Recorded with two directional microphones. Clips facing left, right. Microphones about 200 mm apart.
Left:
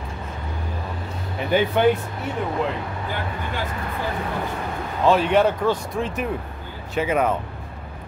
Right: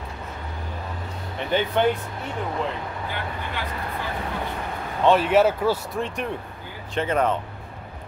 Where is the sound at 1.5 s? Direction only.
10° left (ahead or behind).